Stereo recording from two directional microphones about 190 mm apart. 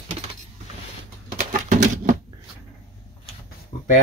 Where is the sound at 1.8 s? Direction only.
40° right (ahead or behind).